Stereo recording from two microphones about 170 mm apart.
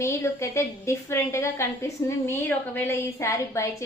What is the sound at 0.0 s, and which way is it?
A woman's voice, 15° left (ahead or behind).